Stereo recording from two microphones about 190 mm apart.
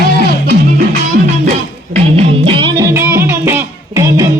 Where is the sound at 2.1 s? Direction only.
30° right (ahead or behind).